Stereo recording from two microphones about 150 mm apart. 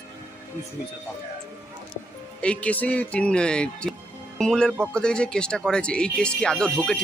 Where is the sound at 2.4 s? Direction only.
10° left (ahead or behind).